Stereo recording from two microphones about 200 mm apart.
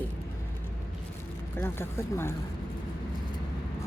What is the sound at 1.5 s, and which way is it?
Speech, 10° left (ahead or behind).